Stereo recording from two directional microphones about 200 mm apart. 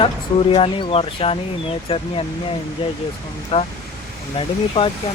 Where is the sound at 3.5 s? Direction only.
30° left (ahead or behind).